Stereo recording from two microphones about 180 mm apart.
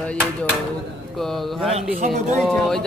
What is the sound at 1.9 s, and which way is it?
Speech, 40° right (ahead or behind).